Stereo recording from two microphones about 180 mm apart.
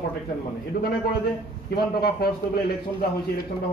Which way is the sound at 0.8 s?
55° left (ahead or behind).